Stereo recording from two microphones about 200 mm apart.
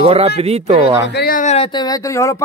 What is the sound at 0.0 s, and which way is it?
Speech, 30° right (ahead or behind).